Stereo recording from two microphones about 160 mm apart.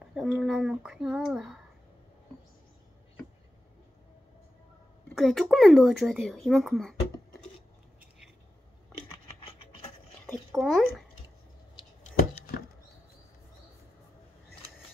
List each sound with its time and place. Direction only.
0.1 s speech: centre (ahead or behind)
5.1 s speech: centre (ahead or behind)
9.1 s a sound: 35° left (ahead or behind)
10.5 s speech: centre (ahead or behind)